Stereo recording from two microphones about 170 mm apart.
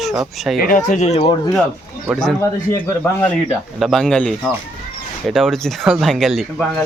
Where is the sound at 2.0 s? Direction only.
5° left (ahead or behind).